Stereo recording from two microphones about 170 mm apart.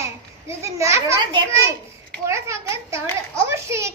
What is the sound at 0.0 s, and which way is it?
A child's voice, 15° right (ahead or behind).